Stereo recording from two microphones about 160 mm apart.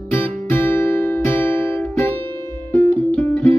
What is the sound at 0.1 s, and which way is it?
Guitar, 15° left (ahead or behind).